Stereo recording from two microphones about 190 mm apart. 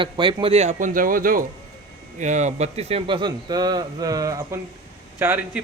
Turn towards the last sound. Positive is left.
turn(degrees=-10)  # may be behind; listen again after turning